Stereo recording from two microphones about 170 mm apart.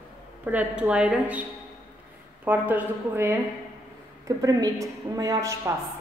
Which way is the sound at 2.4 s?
10° right (ahead or behind).